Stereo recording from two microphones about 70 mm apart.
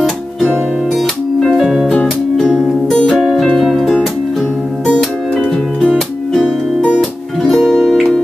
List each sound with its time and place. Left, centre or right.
0.9 s music: centre
1.9 s music: centre
3.3 s music: centre
5.8 s music: centre